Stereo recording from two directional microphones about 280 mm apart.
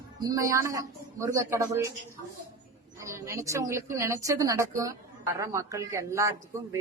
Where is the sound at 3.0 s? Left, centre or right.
Centre.